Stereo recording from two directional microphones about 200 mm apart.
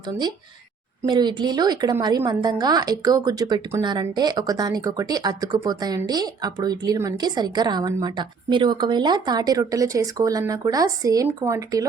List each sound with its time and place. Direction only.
1.0 s speech: 20° right (ahead or behind)